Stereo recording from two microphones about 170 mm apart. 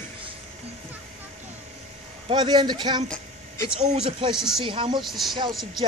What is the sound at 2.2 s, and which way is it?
Speech, 25° right (ahead or behind).